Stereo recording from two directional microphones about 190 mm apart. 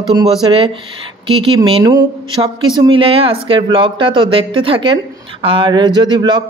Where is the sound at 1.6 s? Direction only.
25° right (ahead or behind).